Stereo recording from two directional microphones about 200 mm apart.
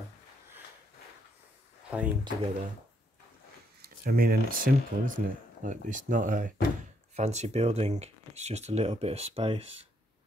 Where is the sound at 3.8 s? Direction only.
50° right (ahead or behind); by 9.7 s 30° right (ahead or behind).